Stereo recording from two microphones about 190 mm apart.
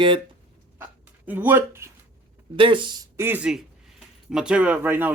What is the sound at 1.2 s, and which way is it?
Speech, 10° right (ahead or behind).